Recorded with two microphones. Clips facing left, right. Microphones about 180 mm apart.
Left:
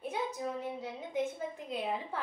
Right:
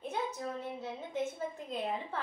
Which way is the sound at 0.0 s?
10° left (ahead or behind).